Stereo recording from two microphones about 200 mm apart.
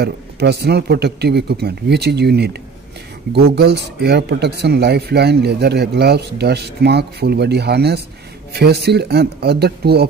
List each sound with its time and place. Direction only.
0.0 s speech: 55° right (ahead or behind)